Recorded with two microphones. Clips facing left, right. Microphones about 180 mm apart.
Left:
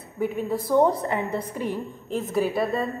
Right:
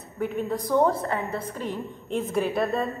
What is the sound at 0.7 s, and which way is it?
A woman's voice, 15° left (ahead or behind).